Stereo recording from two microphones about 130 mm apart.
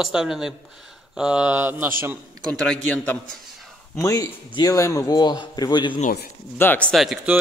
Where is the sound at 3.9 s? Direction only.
25° left (ahead or behind).